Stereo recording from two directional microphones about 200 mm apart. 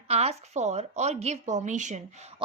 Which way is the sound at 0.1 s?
30° right (ahead or behind).